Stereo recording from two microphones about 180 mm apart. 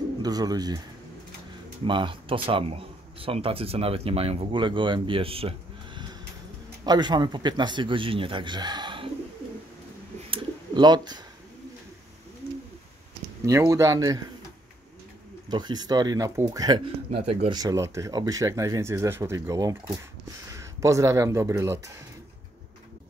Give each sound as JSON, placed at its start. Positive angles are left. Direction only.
{"t": 0.2, "sound": "speech", "side_deg": -20}
{"t": 1.9, "sound": "speech", "side_deg": -30}
{"t": 10.3, "sound": "bird", "side_deg": -25}
{"t": 13.5, "sound": "speech", "side_deg": -15}
{"t": 15.4, "sound": "speech", "side_deg": -25}
{"t": 17.6, "sound": "speech", "side_deg": -20}